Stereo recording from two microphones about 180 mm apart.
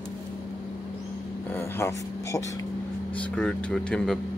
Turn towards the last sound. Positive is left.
turn(degrees=5)  # may be behind; listen again after turning